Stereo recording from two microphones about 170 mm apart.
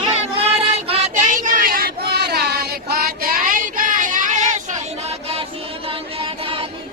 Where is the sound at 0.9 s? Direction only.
45° right (ahead or behind).